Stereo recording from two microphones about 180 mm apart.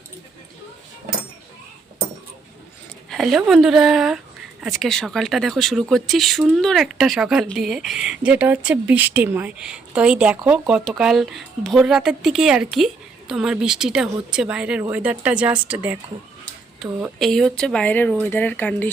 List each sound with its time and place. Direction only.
3.1 s speech: centre (ahead or behind)